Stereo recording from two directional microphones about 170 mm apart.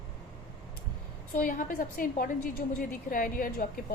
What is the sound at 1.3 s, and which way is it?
A woman's voice, 50° left (ahead or behind).